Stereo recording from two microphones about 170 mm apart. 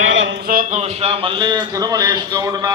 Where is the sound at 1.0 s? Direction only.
30° right (ahead or behind).